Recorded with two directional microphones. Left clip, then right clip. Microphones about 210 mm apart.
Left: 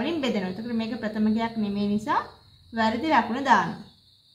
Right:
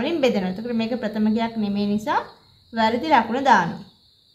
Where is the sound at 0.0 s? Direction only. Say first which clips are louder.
Right 6 dB; 30° right (ahead or behind).